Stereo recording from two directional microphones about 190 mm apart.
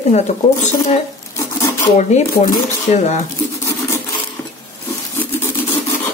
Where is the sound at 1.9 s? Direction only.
35° left (ahead or behind).